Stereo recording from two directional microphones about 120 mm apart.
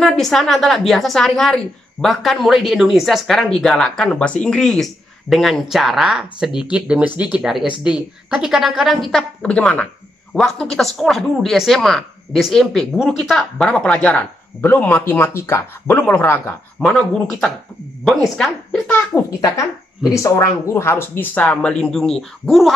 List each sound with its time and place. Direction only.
0.0 s a woman's voice: 5° left (ahead or behind)
19.5 s speech: 30° left (ahead or behind); by 22.7 s centre (ahead or behind)